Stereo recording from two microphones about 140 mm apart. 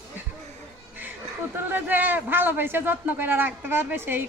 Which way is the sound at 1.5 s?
15° right (ahead or behind).